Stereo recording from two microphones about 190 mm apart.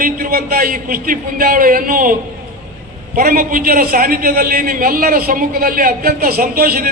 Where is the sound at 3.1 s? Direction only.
50° right (ahead or behind).